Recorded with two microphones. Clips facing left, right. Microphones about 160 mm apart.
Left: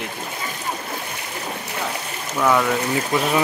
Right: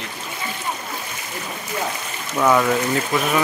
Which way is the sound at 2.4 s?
5° right (ahead or behind).